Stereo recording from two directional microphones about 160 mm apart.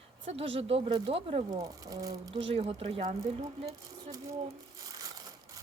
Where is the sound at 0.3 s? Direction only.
35° right (ahead or behind).